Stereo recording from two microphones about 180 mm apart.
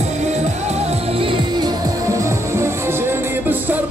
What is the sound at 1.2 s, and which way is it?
Music, 25° right (ahead or behind).